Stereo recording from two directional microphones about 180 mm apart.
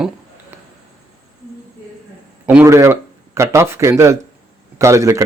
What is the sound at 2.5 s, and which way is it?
A man's voice, 15° right (ahead or behind).